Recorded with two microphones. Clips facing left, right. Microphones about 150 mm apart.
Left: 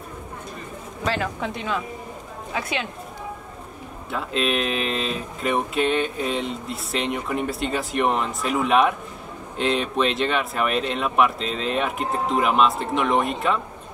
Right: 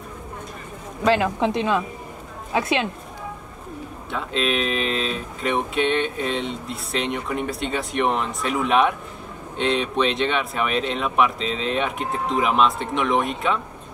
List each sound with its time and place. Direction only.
1.2 s speech: 25° right (ahead or behind)
4.1 s speech: centre (ahead or behind)